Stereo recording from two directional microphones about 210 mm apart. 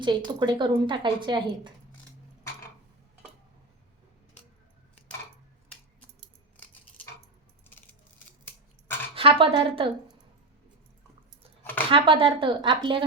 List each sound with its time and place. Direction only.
0.0 s a woman's voice: 20° right (ahead or behind)
9.1 s a woman's voice: 25° right (ahead or behind)
11.6 s a sound: 10° left (ahead or behind)
11.9 s a woman's voice: 25° right (ahead or behind)